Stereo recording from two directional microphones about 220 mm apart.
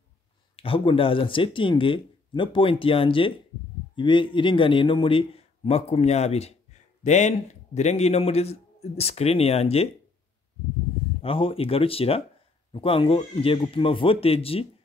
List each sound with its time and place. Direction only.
0.6 s a man's voice: 25° left (ahead or behind)
11.1 s a man's voice: 25° left (ahead or behind)